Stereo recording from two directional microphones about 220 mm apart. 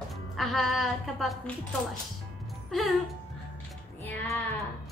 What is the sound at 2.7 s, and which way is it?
Speech, centre (ahead or behind).